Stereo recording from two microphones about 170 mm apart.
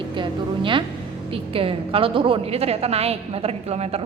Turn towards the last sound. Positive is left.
turn(degrees=-35)  # may be behind; listen again after turning